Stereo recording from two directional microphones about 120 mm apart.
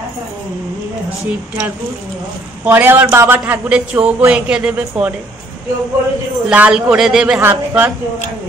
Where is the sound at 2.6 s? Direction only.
15° right (ahead or behind).